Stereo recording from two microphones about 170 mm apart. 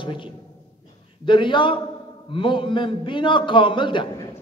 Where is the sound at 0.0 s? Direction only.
30° left (ahead or behind).